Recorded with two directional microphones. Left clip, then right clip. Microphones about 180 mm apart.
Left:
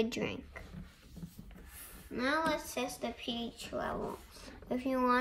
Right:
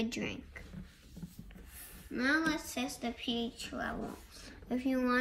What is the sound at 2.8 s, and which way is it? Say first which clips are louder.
Speech: even; 55° left (ahead or behind).